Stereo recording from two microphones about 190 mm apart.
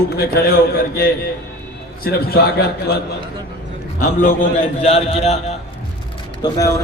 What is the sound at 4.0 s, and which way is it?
A man's voice, 40° left (ahead or behind).